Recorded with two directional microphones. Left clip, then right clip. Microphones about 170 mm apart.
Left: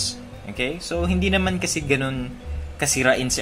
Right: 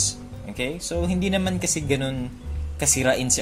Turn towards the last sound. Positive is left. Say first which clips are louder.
# left 2 dB
turn(degrees=-30)  # may be behind; listen again after turning